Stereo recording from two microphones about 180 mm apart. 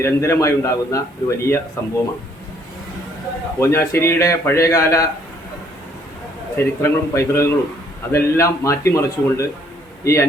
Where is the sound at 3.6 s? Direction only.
15° left (ahead or behind).